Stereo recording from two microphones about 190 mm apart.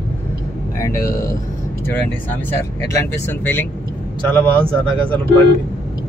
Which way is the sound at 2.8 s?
15° left (ahead or behind).